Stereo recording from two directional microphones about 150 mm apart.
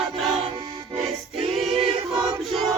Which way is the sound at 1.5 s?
Centre (ahead or behind).